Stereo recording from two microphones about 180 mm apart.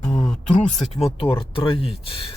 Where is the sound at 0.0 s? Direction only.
40° left (ahead or behind).